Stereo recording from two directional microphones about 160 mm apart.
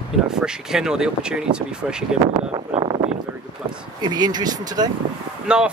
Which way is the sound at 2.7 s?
35° right (ahead or behind).